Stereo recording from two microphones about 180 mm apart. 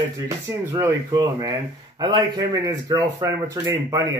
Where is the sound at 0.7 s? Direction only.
15° right (ahead or behind).